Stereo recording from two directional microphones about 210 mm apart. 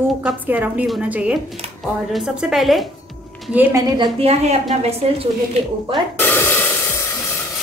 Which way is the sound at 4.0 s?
30° right (ahead or behind).